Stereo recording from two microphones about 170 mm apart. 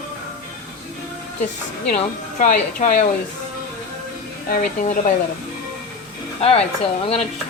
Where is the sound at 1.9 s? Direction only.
50° left (ahead or behind).